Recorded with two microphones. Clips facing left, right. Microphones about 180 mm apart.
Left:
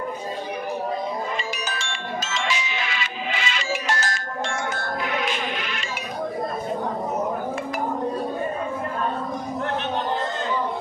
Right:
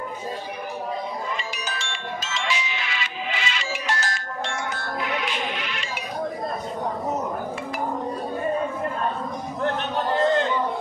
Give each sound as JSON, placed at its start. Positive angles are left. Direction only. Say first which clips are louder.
{"t": 2.3, "sound": "music", "louder": "even", "side_deg": 45}